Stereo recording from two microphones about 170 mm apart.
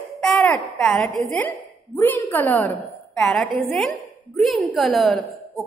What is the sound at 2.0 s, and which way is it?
A woman's voice, 10° left (ahead or behind).